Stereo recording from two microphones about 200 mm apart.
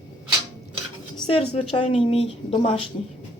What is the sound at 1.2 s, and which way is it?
A woman's voice, 30° left (ahead or behind).